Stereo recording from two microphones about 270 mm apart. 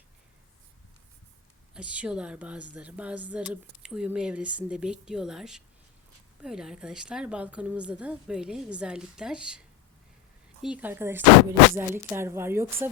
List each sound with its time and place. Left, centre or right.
1.7 s speech: centre
10.6 s speech: centre